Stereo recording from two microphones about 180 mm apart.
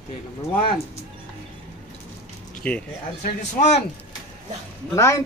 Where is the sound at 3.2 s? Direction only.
40° left (ahead or behind).